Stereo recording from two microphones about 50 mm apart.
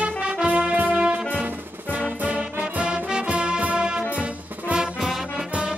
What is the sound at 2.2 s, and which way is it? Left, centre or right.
Music, right.